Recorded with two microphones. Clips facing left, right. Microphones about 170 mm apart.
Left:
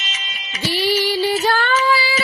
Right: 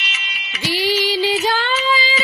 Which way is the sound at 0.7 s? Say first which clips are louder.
Even; 10° right (ahead or behind).